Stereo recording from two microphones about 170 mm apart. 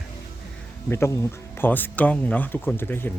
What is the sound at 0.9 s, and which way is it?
Speech, 15° left (ahead or behind).